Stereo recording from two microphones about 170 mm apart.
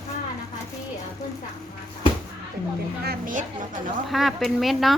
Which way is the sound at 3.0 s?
50° right (ahead or behind).